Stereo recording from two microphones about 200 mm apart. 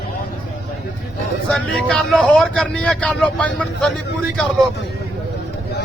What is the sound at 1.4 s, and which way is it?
Speech, 5° left (ahead or behind).